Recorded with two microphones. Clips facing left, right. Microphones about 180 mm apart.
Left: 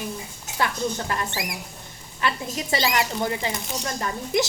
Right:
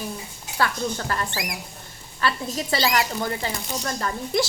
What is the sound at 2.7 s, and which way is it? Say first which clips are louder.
Speech: right 1 dB; 20° left (ahead or behind).